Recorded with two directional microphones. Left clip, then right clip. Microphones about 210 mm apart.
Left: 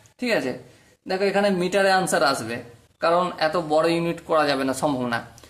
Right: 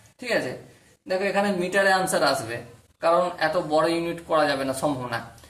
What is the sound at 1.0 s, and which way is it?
Speech, 45° left (ahead or behind).